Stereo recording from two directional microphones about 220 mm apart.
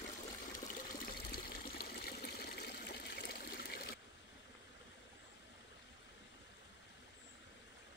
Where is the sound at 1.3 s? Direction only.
45° left (ahead or behind).